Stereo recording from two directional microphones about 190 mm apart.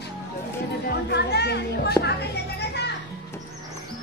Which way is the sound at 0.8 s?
60° left (ahead or behind).